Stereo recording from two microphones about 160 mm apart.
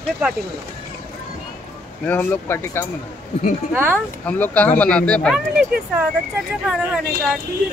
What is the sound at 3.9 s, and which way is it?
Speech, 10° left (ahead or behind).